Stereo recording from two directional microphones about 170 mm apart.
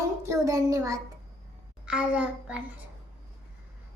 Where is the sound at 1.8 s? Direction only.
5° right (ahead or behind).